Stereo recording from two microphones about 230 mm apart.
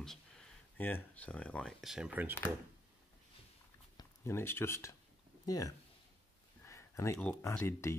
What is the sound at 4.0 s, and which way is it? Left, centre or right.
Speech, centre.